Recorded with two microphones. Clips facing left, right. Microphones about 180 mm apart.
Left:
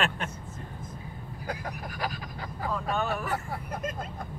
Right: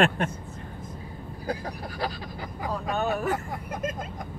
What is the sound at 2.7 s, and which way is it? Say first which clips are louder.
Speech: right 2 dB; 40° right (ahead or behind).